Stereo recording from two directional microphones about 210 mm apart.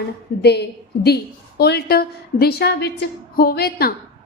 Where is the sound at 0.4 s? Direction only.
50° left (ahead or behind).